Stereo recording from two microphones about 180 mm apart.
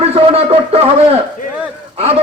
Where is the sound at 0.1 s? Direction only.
35° right (ahead or behind).